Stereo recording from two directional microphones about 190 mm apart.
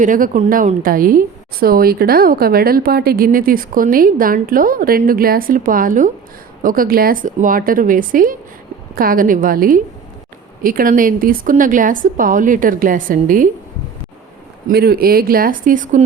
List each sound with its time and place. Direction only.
0.0 s a woman's voice: 45° right (ahead or behind)
14.7 s a woman's voice: 55° right (ahead or behind)